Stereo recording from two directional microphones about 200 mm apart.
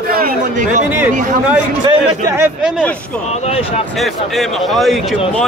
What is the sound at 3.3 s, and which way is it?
Speech, 30° left (ahead or behind).